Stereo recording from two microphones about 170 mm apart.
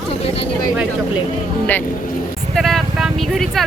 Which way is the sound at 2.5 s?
Centre (ahead or behind).